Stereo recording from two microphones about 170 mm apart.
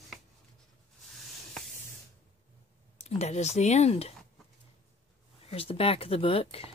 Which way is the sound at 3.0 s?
40° left (ahead or behind).